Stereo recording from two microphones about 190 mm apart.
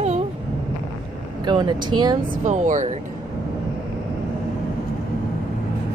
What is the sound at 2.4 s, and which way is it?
Speech, 40° right (ahead or behind).